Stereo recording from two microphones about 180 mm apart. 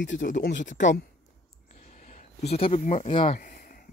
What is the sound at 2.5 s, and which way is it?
Speech, 35° left (ahead or behind).